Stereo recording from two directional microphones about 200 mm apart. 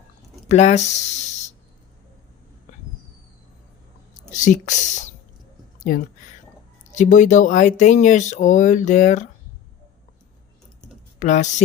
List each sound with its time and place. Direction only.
0.4 s speech: 35° left (ahead or behind)
4.3 s speech: 40° left (ahead or behind)
6.9 s speech: 40° left (ahead or behind)
11.2 s speech: 35° left (ahead or behind)